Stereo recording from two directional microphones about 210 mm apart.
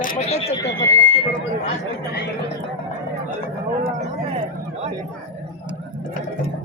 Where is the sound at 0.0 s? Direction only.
35° left (ahead or behind).